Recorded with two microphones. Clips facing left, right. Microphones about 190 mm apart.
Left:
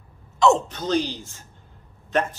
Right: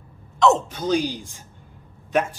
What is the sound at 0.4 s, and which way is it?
Speech, 5° right (ahead or behind).